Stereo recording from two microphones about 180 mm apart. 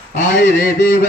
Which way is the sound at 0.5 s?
55° left (ahead or behind).